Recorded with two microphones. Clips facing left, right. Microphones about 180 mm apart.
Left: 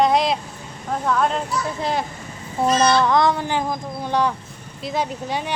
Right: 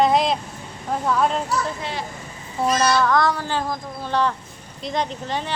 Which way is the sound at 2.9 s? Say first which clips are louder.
Left 2 dB; 20° left (ahead or behind).